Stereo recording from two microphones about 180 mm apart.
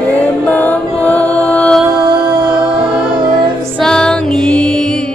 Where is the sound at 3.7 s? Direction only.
5° left (ahead or behind).